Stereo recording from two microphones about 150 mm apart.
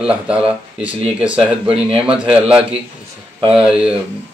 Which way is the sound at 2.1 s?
5° right (ahead or behind).